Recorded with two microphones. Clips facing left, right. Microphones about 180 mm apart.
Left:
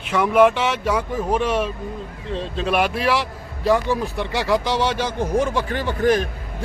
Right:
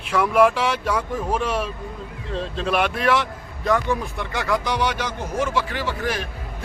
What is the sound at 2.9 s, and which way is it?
A man's voice, 30° left (ahead or behind).